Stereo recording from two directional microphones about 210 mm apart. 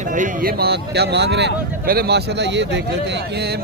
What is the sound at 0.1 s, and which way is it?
Speech, 40° right (ahead or behind).